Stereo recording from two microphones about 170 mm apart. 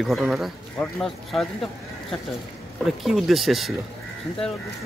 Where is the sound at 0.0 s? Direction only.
Centre (ahead or behind).